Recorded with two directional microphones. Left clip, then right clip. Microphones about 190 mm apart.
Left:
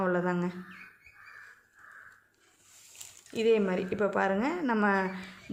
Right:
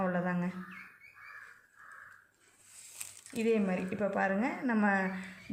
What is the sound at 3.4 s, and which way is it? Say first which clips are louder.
Speech: left 5 dB; 50° left (ahead or behind).